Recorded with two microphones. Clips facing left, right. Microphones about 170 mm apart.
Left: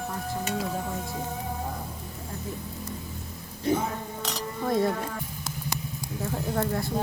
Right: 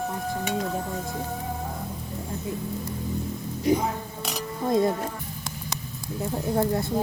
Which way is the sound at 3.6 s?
15° right (ahead or behind).